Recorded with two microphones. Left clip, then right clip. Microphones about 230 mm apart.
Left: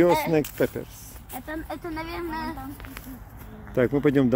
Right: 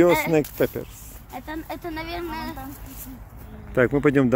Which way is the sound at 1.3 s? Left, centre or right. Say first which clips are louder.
Right 1 dB; right.